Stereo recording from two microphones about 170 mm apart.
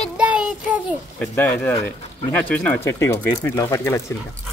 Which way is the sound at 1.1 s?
10° left (ahead or behind).